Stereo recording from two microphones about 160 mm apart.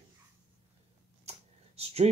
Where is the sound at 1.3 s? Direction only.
40° right (ahead or behind).